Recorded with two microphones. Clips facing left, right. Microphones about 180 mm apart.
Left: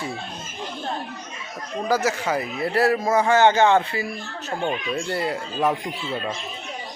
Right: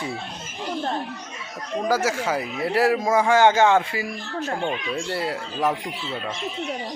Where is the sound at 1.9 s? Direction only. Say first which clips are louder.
Left 1 dB; 10° right (ahead or behind).